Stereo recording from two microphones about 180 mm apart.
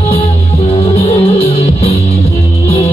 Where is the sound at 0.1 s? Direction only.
30° left (ahead or behind).